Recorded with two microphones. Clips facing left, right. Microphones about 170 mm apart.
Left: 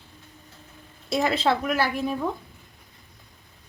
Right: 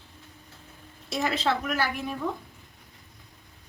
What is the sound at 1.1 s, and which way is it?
Speech, 30° left (ahead or behind).